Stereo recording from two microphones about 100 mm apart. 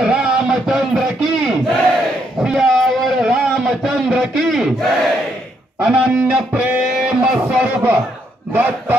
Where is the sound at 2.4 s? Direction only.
5° right (ahead or behind).